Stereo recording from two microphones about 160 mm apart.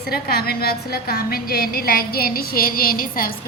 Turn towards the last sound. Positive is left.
turn(degrees=65)  # may be behind; listen again after turning